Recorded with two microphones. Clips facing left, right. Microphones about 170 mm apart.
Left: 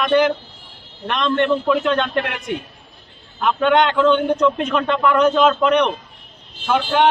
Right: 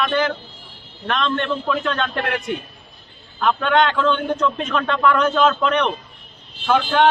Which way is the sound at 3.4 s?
15° left (ahead or behind).